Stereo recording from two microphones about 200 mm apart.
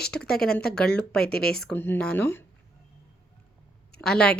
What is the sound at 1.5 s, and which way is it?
Speech, 5° left (ahead or behind).